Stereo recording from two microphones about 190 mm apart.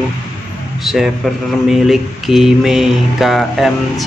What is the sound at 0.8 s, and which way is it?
Mantra, centre (ahead or behind).